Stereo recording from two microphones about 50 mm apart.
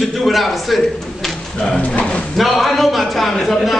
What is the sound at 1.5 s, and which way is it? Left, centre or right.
Speech, centre.